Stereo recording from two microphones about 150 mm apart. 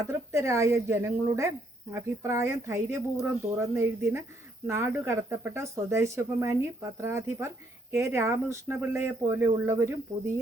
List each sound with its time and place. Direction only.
0.1 s speech: 20° right (ahead or behind)